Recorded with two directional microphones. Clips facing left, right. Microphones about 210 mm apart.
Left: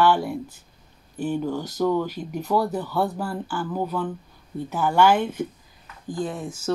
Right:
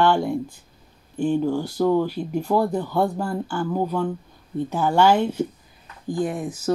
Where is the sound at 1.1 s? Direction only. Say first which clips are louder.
Right 5 dB; 5° left (ahead or behind).